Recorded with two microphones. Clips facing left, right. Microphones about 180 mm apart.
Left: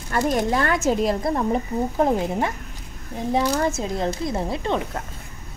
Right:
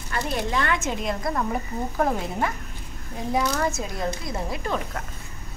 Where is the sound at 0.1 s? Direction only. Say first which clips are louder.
Left 6 dB; 45° left (ahead or behind); by 5.0 s 25° left (ahead or behind).